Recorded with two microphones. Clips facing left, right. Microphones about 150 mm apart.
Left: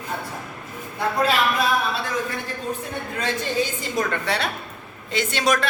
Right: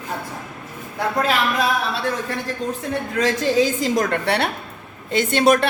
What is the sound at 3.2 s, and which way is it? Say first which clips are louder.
A woman's voice: right 7 dB; 90° right.